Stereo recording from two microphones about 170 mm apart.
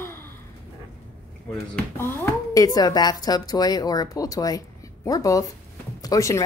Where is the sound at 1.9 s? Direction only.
15° left (ahead or behind).